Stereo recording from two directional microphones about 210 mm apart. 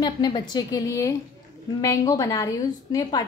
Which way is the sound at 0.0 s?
20° left (ahead or behind).